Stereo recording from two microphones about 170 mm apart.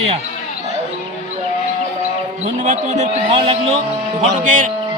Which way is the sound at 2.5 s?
45° right (ahead or behind).